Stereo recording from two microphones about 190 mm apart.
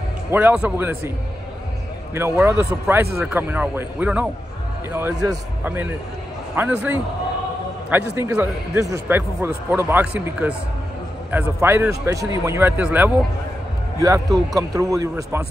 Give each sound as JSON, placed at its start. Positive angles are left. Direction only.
{"t": 0.3, "sound": "a man's voice", "side_deg": -10}
{"t": 2.1, "sound": "a man's voice", "side_deg": -10}
{"t": 14.5, "sound": "a man's voice", "side_deg": -20}